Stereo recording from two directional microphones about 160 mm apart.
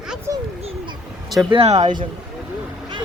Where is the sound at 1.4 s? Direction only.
30° right (ahead or behind).